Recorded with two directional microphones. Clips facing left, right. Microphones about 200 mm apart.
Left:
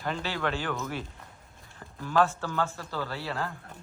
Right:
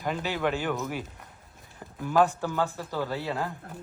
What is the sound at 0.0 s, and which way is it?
A man's voice, 15° right (ahead or behind).